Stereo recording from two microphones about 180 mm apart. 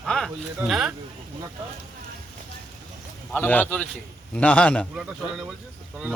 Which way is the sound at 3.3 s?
10° left (ahead or behind).